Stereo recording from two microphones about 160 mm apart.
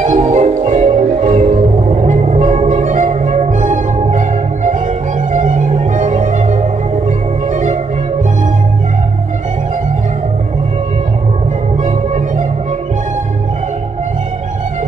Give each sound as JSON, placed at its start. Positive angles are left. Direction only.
{"t": 0.0, "sound": "music", "side_deg": -50}
{"t": 5.3, "sound": "music", "side_deg": -50}
{"t": 7.5, "sound": "music", "side_deg": -50}
{"t": 11.8, "sound": "music", "side_deg": -50}